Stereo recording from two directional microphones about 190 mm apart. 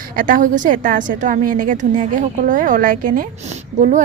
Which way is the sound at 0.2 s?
45° right (ahead or behind).